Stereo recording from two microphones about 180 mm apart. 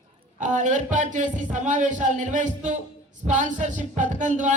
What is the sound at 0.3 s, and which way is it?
A man's voice, 45° right (ahead or behind).